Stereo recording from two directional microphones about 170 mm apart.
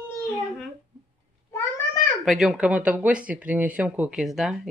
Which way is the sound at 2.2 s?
Centre (ahead or behind).